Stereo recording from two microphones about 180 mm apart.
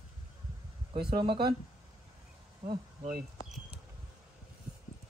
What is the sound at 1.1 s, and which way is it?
Speech, 25° right (ahead or behind).